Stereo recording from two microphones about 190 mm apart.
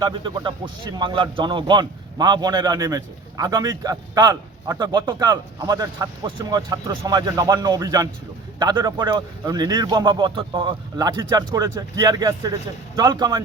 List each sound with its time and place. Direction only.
0.0 s speech: 25° right (ahead or behind)